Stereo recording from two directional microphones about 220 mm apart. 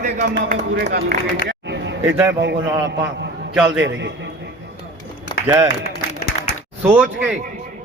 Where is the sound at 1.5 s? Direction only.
50° right (ahead or behind).